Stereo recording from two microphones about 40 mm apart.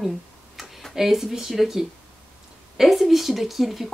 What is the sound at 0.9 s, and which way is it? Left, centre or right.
A woman's voice, centre.